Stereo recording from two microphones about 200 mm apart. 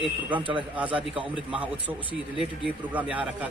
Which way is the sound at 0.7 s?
5° right (ahead or behind).